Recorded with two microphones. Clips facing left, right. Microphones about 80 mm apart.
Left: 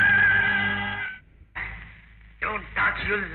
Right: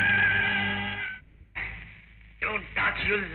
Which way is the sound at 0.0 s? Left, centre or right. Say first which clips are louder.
Left 5 dB; left.